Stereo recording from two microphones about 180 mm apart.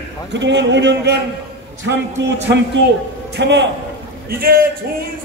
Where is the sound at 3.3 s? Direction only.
75° right (ahead or behind).